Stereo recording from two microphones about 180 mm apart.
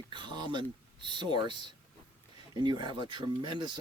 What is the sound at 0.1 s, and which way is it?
Speech, 25° right (ahead or behind).